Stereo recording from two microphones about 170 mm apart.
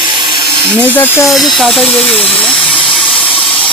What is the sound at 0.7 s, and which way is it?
Speech, 10° left (ahead or behind).